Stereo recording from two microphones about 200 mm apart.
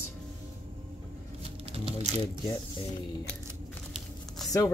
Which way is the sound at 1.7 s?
30° right (ahead or behind).